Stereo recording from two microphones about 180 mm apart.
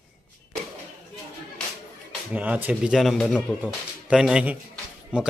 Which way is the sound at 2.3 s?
10° right (ahead or behind).